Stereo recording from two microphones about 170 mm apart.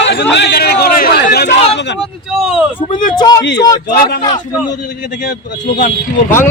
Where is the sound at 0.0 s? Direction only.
90° left; by 1.5 s 70° left (ahead or behind).